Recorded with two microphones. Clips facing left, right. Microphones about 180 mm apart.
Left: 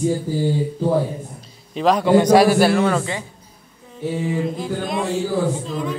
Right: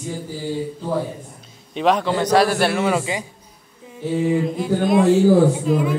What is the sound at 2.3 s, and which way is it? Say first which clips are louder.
Speech: left 1 dB; 10° left (ahead or behind).